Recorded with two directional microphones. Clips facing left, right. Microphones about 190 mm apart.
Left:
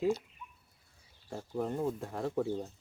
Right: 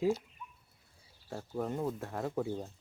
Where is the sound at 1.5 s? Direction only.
Centre (ahead or behind).